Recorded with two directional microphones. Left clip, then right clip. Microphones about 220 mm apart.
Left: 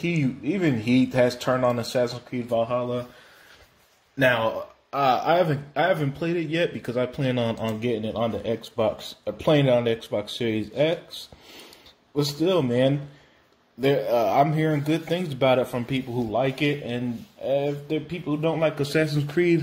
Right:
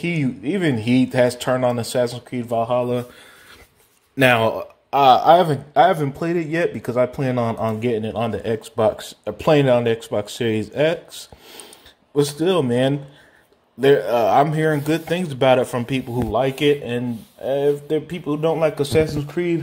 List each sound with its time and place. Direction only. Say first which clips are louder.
0.0 s speech: right 3 dB; 25° right (ahead or behind)
4.2 s speech: right 5 dB; 45° right (ahead or behind); by 11.0 s 25° right (ahead or behind)
12.4 s speech: even; 25° right (ahead or behind)
19.3 s speech: left 2 dB; centre (ahead or behind)